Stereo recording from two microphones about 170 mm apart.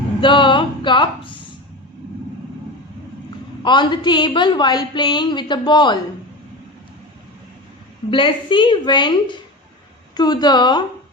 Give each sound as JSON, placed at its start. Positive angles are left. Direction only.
{"t": 0.2, "sound": "a woman's voice", "side_deg": 30}
{"t": 3.6, "sound": "a woman's voice", "side_deg": 25}
{"t": 8.1, "sound": "a woman's voice", "side_deg": 30}